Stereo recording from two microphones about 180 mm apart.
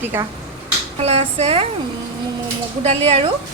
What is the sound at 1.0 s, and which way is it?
Speech, 35° right (ahead or behind).